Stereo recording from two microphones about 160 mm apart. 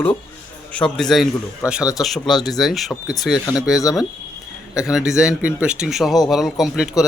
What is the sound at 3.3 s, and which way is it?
Speech, 25° left (ahead or behind).